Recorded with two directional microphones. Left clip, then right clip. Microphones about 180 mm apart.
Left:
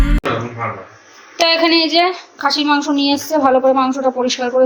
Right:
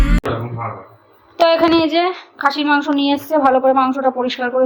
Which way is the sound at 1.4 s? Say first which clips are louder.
Even; 5° left (ahead or behind).